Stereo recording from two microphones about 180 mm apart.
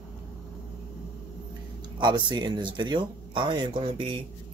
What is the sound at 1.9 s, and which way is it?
Speech, 25° right (ahead or behind).